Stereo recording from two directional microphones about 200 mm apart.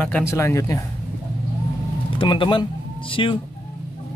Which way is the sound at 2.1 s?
25° left (ahead or behind).